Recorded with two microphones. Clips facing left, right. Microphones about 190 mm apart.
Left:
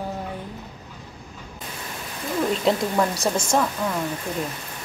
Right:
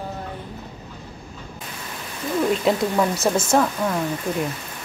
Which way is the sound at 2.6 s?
5° right (ahead or behind).